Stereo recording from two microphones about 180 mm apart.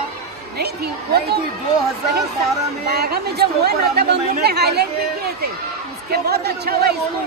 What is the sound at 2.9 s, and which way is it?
Speech, 60° right (ahead or behind).